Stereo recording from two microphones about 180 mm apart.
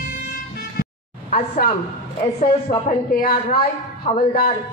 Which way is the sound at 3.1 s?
55° left (ahead or behind).